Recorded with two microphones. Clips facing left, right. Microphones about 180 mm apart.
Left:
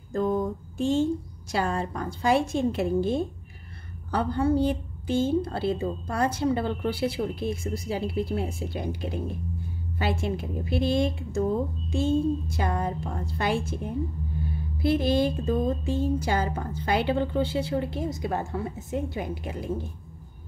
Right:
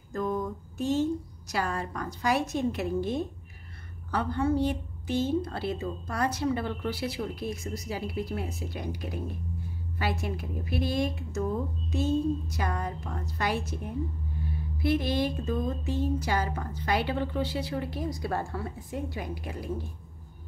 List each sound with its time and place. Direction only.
0.1 s a sound: 30° left (ahead or behind)
1.5 s a woman's voice: 25° left (ahead or behind)
14.8 s a woman's voice: 30° left (ahead or behind)